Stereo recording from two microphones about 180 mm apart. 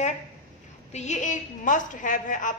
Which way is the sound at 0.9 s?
40° left (ahead or behind).